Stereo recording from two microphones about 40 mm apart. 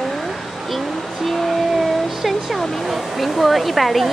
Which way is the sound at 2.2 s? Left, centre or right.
Centre.